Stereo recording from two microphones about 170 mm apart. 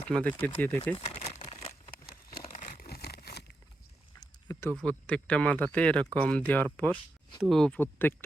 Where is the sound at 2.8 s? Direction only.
65° left (ahead or behind).